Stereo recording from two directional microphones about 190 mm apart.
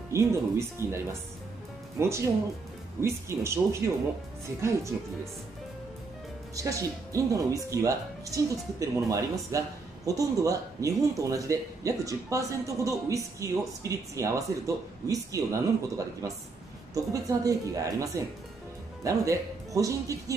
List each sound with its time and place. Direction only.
0.1 s speech: 15° right (ahead or behind)
4.6 s speech: 15° right (ahead or behind)
6.5 s speech: 15° right (ahead or behind)